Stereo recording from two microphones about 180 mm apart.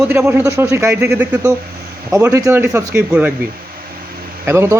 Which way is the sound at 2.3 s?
15° right (ahead or behind).